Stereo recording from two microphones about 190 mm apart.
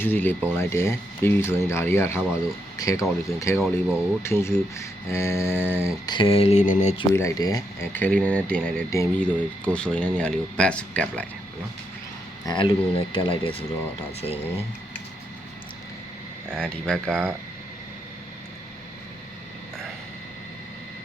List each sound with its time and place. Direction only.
0.0 s speech: 10° left (ahead or behind)
3.6 s speech: 5° right (ahead or behind)
4.2 s speech: 15° left (ahead or behind)
6.1 s a sound: 25° left (ahead or behind)
7.1 s speech: 15° left (ahead or behind)
12.5 s speech: 25° left (ahead or behind)
14.2 s a sound: 30° left (ahead or behind)
16.5 s speech: 5° left (ahead or behind)